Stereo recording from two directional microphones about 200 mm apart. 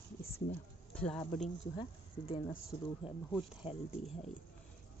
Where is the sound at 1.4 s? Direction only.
30° left (ahead or behind).